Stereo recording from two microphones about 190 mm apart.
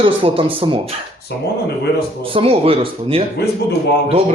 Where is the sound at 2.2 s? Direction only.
30° right (ahead or behind).